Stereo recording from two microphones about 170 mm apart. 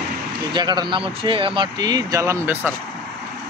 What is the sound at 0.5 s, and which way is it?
Speech, 25° right (ahead or behind).